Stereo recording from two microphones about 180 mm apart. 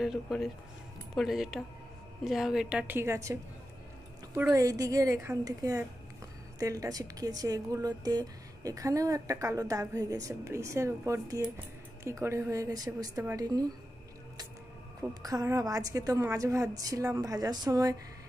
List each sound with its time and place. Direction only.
0.0 s speech: centre (ahead or behind)
4.4 s a woman's voice: 20° right (ahead or behind)
15.2 s a woman's voice: 20° right (ahead or behind)